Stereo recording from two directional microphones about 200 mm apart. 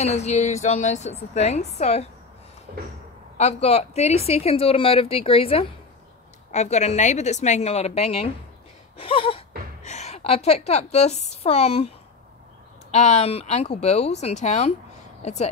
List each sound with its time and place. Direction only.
0.0 s a woman's voice: 35° left (ahead or behind)
2.7 s a sound: 45° right (ahead or behind)
3.3 s a woman's voice: 30° left (ahead or behind)
12.9 s a woman's voice: 35° left (ahead or behind)